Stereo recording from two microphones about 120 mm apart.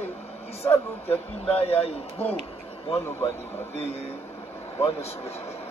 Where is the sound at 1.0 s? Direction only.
55° left (ahead or behind).